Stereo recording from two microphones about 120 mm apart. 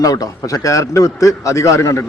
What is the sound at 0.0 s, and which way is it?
A man's voice, 30° left (ahead or behind).